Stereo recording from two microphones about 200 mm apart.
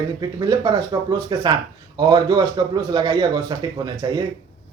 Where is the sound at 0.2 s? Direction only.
20° right (ahead or behind).